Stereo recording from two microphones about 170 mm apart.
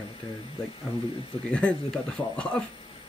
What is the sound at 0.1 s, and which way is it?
Speech, 35° left (ahead or behind).